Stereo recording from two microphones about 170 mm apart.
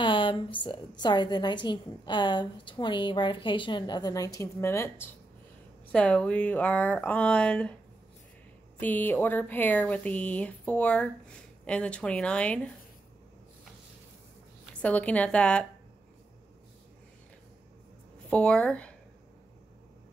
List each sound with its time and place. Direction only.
0.0 s a sound: 30° left (ahead or behind)
0.7 s a woman's voice: 25° left (ahead or behind); by 7.7 s 5° left (ahead or behind)
8.7 s speech: 10° left (ahead or behind)
14.7 s speech: 10° left (ahead or behind)
18.3 s speech: 5° left (ahead or behind)